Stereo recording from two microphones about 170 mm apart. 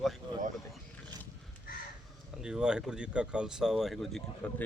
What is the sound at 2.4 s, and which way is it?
Speech, 5° right (ahead or behind).